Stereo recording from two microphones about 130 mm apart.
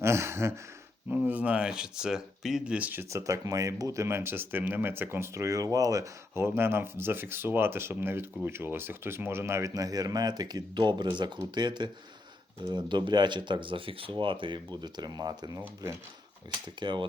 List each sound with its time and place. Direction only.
0.0 s speech: 20° right (ahead or behind)
16.8 s speech: 35° right (ahead or behind)